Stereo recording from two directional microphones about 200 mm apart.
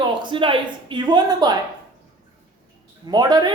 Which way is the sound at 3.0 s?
20° right (ahead or behind).